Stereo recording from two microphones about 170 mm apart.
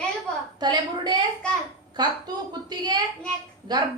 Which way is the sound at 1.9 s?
25° right (ahead or behind).